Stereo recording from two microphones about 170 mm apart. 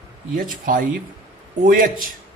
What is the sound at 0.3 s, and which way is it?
Speech, 55° right (ahead or behind).